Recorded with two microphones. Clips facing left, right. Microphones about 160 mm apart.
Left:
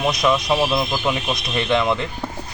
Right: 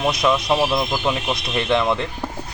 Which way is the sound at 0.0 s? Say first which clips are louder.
Even; 5° right (ahead or behind).